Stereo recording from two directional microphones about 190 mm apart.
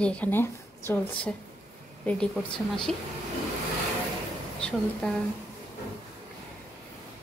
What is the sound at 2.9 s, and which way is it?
Speech, centre (ahead or behind).